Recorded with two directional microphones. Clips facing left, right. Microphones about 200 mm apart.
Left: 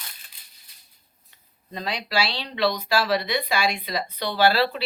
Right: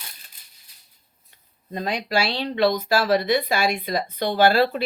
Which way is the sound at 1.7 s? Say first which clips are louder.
Right 3 dB; 50° right (ahead or behind).